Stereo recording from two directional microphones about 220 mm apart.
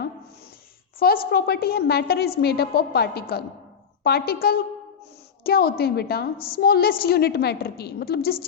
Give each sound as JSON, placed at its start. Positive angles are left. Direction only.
{"t": 0.9, "sound": "a woman's voice", "side_deg": 45}